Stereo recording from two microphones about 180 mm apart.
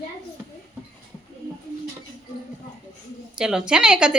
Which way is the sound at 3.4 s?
5° right (ahead or behind).